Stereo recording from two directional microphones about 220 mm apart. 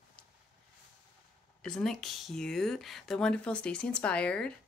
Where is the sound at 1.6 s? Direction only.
5° left (ahead or behind).